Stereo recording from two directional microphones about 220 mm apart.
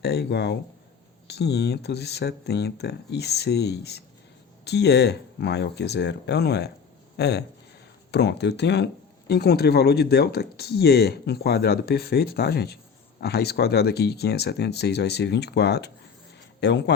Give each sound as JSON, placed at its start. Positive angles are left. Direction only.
{"t": 0.0, "sound": "speech", "side_deg": 50}